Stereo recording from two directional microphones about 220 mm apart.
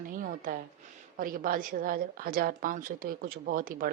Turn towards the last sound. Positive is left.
turn(degrees=-40)  # may be behind; listen again after turning